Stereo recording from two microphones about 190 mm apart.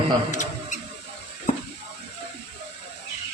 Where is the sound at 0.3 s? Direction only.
40° left (ahead or behind).